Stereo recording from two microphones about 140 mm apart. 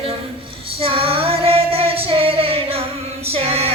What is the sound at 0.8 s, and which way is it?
Female singing, 40° right (ahead or behind).